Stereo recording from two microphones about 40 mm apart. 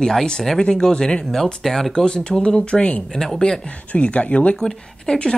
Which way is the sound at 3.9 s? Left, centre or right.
Left.